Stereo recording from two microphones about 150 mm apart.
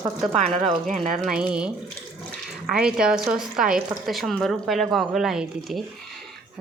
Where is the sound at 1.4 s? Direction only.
5° right (ahead or behind).